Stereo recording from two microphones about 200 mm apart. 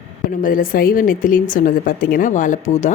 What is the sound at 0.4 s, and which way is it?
A woman's voice, 45° left (ahead or behind).